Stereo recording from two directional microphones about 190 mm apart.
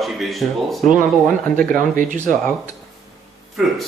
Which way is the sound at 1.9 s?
45° right (ahead or behind).